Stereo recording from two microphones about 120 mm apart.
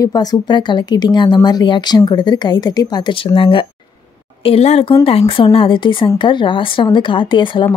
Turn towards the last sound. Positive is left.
turn(degrees=45)  # may be behind; listen again after turning